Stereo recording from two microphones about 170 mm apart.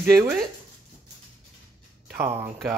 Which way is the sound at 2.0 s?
15° right (ahead or behind).